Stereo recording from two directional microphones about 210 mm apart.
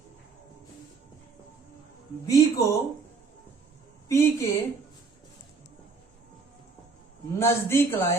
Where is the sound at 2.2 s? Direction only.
15° left (ahead or behind).